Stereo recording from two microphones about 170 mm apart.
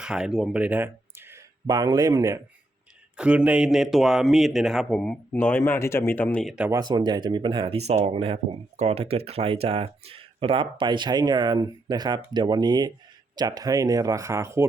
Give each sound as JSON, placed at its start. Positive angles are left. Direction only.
{"t": 0.0, "sound": "speech", "side_deg": -5}
{"t": 1.6, "sound": "speech", "side_deg": -25}
{"t": 3.2, "sound": "a man's voice", "side_deg": -5}
{"t": 6.7, "sound": "speech", "side_deg": -25}